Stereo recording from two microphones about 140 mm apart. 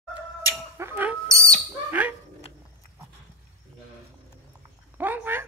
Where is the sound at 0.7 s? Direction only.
15° right (ahead or behind).